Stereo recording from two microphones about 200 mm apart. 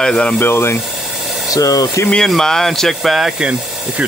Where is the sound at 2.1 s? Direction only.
Centre (ahead or behind).